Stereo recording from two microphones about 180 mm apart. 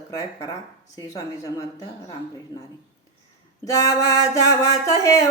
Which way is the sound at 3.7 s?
20° left (ahead or behind).